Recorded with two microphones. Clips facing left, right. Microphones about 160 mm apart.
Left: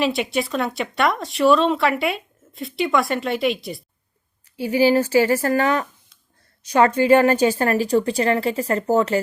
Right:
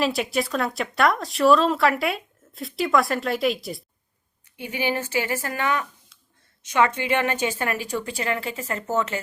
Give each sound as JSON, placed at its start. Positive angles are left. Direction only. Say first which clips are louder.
{"t": 0.0, "sound": "speech", "louder": "left 2 dB", "side_deg": 0}
{"t": 4.5, "sound": "a woman's voice", "louder": "left 10 dB", "side_deg": 35}